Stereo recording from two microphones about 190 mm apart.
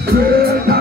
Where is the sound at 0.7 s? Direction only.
50° right (ahead or behind).